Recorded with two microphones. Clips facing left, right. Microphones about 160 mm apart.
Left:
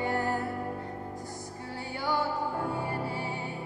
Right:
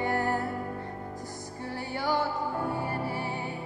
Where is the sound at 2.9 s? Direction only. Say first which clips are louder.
Right 1 dB; 20° left (ahead or behind).